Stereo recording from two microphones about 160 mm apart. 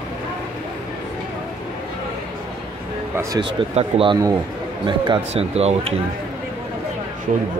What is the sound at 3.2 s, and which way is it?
Speech, 25° right (ahead or behind).